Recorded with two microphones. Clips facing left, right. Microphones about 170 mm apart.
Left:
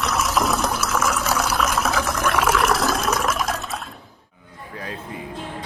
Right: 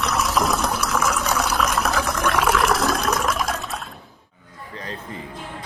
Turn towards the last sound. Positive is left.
turn(degrees=0)  # may be behind; listen again after turning